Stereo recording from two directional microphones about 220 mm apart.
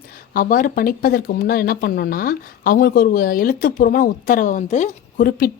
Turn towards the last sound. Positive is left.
turn(degrees=40)  # may be behind; listen again after turning